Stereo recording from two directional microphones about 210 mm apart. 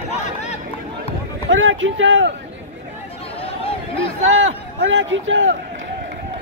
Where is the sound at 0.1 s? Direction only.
30° left (ahead or behind).